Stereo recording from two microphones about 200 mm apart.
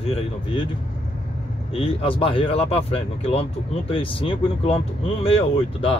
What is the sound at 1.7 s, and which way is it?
Speech, 30° left (ahead or behind).